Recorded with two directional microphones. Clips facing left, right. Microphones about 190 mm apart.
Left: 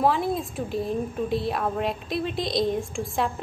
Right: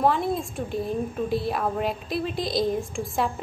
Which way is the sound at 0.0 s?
Centre (ahead or behind).